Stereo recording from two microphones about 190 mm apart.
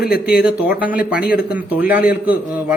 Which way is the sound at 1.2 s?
55° left (ahead or behind).